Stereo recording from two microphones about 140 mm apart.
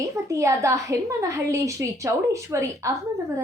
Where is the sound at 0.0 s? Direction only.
25° right (ahead or behind).